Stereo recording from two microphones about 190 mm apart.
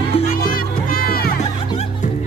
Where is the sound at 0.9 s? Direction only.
50° left (ahead or behind).